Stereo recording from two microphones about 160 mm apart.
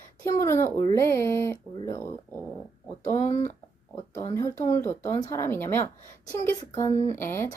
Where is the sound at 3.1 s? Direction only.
45° left (ahead or behind).